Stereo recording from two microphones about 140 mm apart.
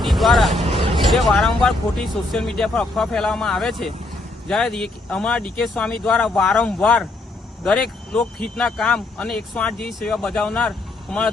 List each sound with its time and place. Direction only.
0.0 s vehicle: centre (ahead or behind)
1.0 s speech: centre (ahead or behind)